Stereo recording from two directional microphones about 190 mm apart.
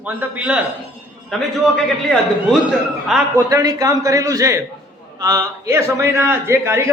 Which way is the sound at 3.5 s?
15° right (ahead or behind).